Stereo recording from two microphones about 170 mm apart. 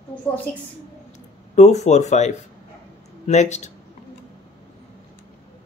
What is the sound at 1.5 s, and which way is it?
Speech, 40° left (ahead or behind).